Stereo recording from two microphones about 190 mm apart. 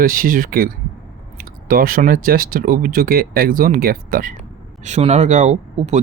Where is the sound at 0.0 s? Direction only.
45° right (ahead or behind).